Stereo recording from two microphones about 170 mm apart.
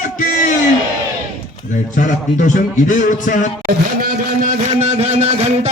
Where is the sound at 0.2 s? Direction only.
50° left (ahead or behind).